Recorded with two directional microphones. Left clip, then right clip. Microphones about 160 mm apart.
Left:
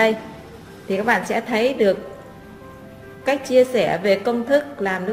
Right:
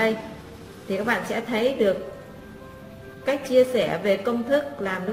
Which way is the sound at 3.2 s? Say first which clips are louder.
Left 3 dB; 35° left (ahead or behind).